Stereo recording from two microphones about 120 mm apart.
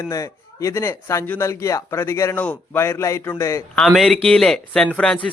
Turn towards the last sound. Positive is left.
turn(degrees=10)  # may be behind; listen again after turning